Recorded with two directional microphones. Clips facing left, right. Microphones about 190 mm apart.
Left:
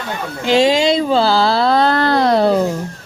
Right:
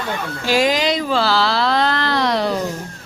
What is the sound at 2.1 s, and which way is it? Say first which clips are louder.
Music: left 6 dB; 50° left (ahead or behind).